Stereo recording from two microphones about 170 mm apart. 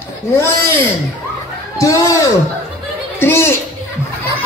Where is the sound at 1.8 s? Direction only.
20° left (ahead or behind).